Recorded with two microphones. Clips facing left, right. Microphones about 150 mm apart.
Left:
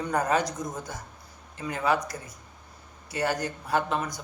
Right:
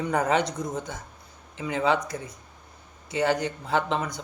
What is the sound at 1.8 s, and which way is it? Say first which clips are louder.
Speech: right 1 dB; 25° right (ahead or behind).